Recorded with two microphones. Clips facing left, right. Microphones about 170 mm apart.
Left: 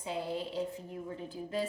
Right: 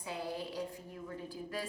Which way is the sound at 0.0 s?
25° left (ahead or behind).